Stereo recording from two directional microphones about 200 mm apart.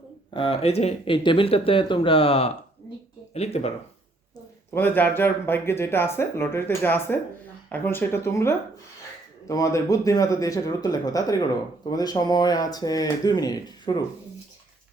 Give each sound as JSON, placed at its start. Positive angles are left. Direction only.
{"t": 0.3, "sound": "speech", "side_deg": 25}
{"t": 4.7, "sound": "speech", "side_deg": 10}